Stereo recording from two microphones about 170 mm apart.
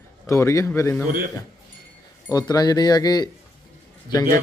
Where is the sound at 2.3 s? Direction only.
20° left (ahead or behind).